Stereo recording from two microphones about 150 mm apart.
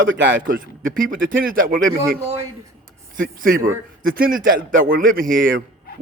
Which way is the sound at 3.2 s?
65° right (ahead or behind).